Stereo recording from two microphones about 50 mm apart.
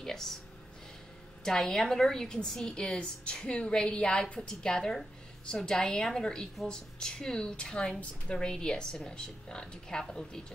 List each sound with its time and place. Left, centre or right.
0.0 s a woman's voice: centre
1.4 s a woman's voice: centre